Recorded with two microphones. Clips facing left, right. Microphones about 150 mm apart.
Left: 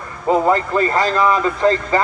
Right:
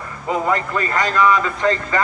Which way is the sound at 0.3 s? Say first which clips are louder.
Left 5 dB; 30° left (ahead or behind).